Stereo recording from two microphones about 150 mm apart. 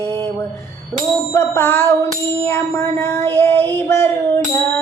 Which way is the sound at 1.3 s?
15° left (ahead or behind).